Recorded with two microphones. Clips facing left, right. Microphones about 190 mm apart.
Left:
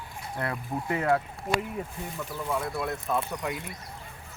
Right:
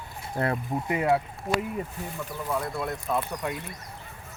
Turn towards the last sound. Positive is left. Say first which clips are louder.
# right 1 dB
turn(degrees=0)  # may be behind; listen again after turning